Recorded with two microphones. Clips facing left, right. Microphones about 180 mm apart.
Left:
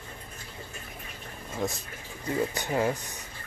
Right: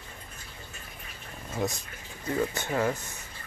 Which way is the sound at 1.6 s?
5° right (ahead or behind).